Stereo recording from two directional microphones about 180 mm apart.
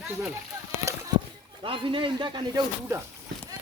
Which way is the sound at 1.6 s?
30° right (ahead or behind).